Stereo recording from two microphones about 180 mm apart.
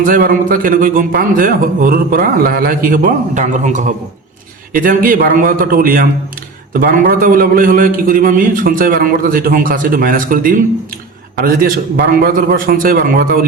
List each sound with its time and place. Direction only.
0.0 s a man's voice: 50° right (ahead or behind)